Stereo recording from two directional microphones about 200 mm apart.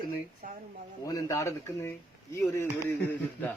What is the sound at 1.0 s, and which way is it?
Speech, 15° left (ahead or behind).